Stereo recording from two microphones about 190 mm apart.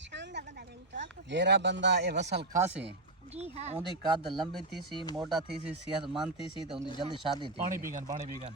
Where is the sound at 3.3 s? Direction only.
35° right (ahead or behind).